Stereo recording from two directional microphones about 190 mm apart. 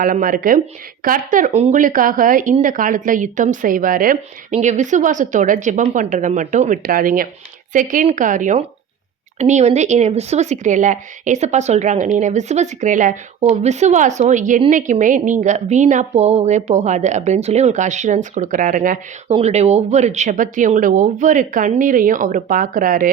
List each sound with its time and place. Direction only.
0.0 s speech: 45° right (ahead or behind)
19.3 s speech: 35° right (ahead or behind)